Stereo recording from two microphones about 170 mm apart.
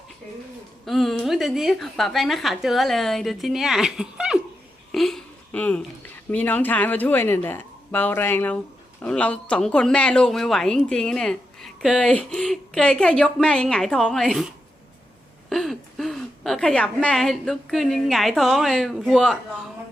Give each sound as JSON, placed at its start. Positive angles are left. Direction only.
{"t": 0.9, "sound": "speech", "side_deg": 0}
{"t": 4.9, "sound": "a sound", "side_deg": 0}
{"t": 6.3, "sound": "a woman's voice", "side_deg": 10}